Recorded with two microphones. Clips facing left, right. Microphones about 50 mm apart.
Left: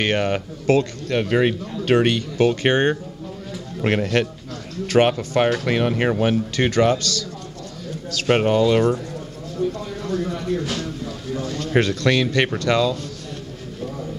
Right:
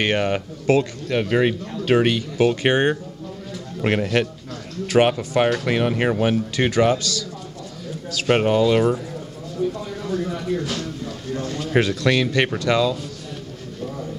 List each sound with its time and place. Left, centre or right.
0.0 s speech: centre
1.1 s speech: centre
8.3 s speech: centre
10.0 s a sound: centre
10.6 s a sound: left
11.7 s speech: centre